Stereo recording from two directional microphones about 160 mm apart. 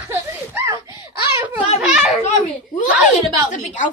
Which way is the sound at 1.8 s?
5° right (ahead or behind).